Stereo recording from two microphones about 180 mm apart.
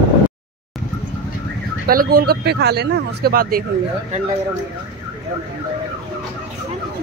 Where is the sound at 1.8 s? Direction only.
55° right (ahead or behind).